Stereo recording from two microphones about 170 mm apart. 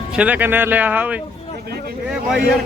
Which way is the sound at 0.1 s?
5° right (ahead or behind).